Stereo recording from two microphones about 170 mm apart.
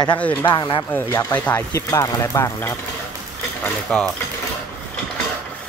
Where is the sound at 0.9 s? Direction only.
10° left (ahead or behind).